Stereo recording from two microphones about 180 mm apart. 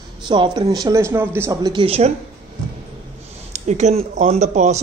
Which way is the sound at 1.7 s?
35° right (ahead or behind).